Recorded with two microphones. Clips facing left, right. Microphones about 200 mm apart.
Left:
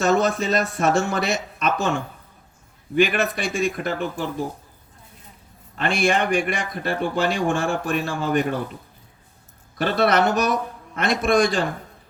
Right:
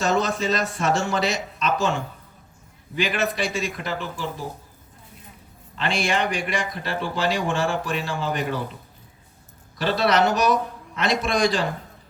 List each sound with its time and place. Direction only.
0.0 s speech: 55° left (ahead or behind)
2.9 s speech: 55° left (ahead or behind)
5.7 s speech: 55° left (ahead or behind)
9.7 s speech: 55° left (ahead or behind)